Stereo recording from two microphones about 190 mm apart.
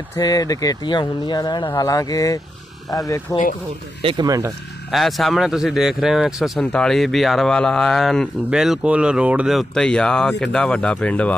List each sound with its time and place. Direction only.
0.1 s speech: 20° left (ahead or behind)
4.0 s speech: 25° right (ahead or behind)
4.9 s speech: centre (ahead or behind)